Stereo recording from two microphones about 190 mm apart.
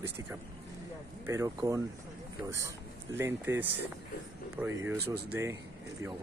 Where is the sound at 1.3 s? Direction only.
15° right (ahead or behind).